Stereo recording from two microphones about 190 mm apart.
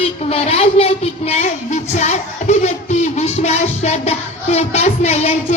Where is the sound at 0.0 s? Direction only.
30° left (ahead or behind).